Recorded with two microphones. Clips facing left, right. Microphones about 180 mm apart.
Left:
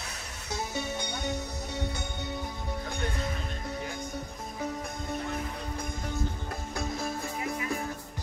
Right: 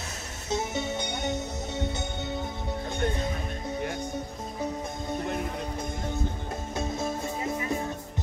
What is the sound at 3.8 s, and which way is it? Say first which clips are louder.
Music: right 5 dB; 70° right (ahead or behind).